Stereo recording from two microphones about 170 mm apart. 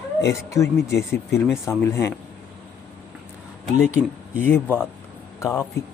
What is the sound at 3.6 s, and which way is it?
Speech, 5° right (ahead or behind).